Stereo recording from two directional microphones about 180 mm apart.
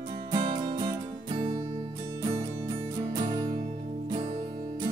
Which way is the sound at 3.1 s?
25° right (ahead or behind).